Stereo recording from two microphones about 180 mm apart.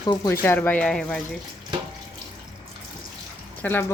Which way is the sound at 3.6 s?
10° left (ahead or behind).